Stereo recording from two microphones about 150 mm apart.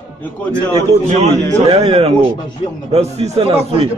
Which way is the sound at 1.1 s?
45° right (ahead or behind).